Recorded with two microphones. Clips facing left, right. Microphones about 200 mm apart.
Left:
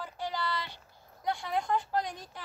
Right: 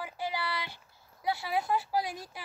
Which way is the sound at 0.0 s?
10° right (ahead or behind).